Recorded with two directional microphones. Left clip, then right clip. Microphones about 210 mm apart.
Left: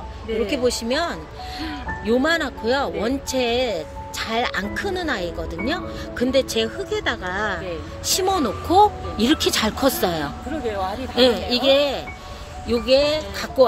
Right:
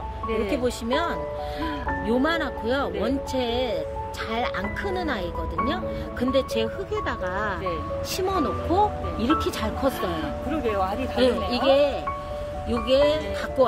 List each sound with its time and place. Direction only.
0.7 s speech: 30° left (ahead or behind)
11.1 s speech: 35° left (ahead or behind)